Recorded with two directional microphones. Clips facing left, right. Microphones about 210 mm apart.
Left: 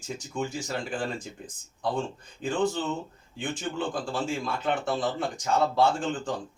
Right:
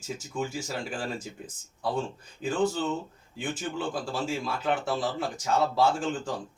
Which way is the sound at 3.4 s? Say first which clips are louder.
Left 1 dB; 5° right (ahead or behind).